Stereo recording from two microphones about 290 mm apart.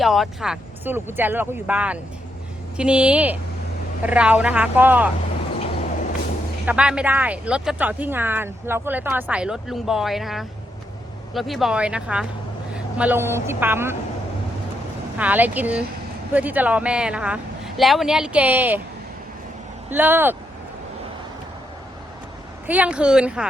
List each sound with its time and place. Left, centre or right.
0.0 s speech: centre
6.7 s a woman's voice: centre
15.2 s speech: centre
19.9 s speech: centre
22.6 s speech: centre